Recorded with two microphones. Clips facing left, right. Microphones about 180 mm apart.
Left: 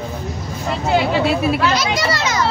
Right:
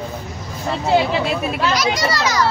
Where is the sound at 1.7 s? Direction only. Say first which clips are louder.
Even; 25° left (ahead or behind).